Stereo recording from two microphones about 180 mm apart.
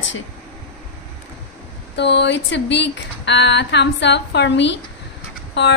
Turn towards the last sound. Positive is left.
turn(degrees=80)